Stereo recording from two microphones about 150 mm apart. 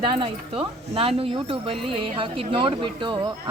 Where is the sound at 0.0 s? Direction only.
35° right (ahead or behind).